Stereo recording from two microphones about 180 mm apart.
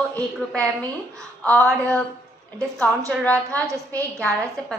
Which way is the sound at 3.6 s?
15° right (ahead or behind).